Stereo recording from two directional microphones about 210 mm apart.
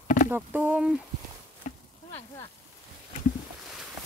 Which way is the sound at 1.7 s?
35° left (ahead or behind).